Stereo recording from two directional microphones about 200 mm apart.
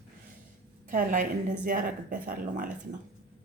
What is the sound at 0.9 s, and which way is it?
A woman's voice, 40° right (ahead or behind).